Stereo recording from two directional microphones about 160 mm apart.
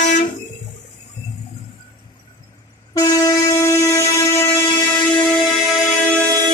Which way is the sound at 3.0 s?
20° left (ahead or behind).